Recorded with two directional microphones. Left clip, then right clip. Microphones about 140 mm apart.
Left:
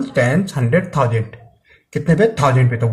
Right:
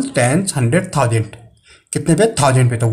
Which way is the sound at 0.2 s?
30° right (ahead or behind).